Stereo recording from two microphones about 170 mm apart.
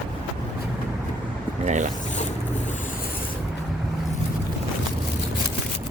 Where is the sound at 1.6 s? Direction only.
45° right (ahead or behind).